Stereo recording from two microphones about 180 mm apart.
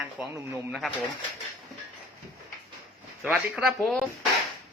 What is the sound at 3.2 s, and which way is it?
Speech, 5° right (ahead or behind).